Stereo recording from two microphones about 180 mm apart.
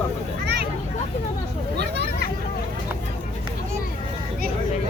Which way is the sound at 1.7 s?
70° right (ahead or behind).